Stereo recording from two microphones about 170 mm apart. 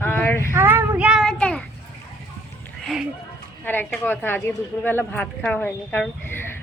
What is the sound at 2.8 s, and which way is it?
Speech, centre (ahead or behind).